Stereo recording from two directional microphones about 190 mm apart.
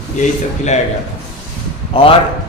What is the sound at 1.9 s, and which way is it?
Speech, 30° left (ahead or behind).